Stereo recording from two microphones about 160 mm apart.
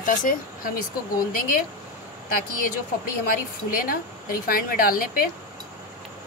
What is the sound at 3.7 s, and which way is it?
A woman's voice, 60° left (ahead or behind).